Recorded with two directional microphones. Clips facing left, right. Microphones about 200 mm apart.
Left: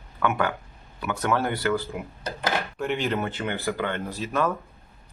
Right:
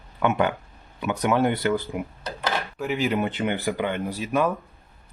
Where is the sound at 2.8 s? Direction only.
5° right (ahead or behind).